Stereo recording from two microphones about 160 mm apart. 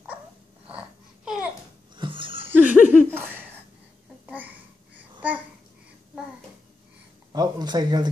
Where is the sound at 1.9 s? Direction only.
30° right (ahead or behind).